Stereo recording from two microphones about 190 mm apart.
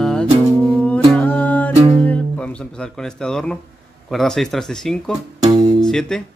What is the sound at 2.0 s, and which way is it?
Speech, 5° left (ahead or behind).